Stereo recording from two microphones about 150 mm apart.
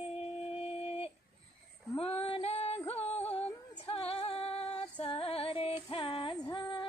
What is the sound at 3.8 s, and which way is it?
Female singing, 40° left (ahead or behind).